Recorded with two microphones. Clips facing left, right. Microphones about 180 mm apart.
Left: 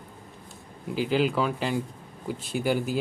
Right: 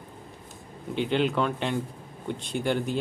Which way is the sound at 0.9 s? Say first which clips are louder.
Left 1 dB; 5° left (ahead or behind).